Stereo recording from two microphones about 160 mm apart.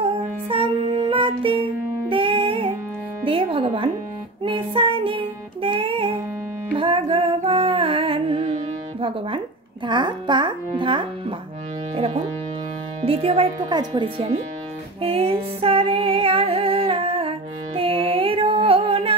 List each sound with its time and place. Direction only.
0.5 s music: 35° right (ahead or behind)
3.3 s speech: 35° right (ahead or behind)
4.5 s music: 35° right (ahead or behind)
9.8 s a child's voice: 30° right (ahead or behind)
15.0 s female singing: 35° right (ahead or behind)